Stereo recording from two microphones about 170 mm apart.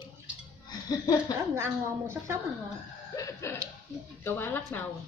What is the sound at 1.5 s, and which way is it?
Speech, 15° right (ahead or behind).